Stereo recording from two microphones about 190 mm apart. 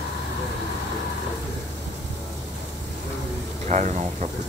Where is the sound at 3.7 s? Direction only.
40° right (ahead or behind).